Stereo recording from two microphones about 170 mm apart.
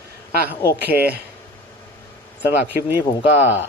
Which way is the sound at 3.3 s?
90° left.